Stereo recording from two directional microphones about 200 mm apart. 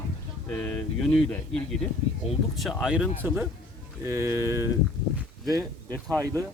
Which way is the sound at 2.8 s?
5° right (ahead or behind).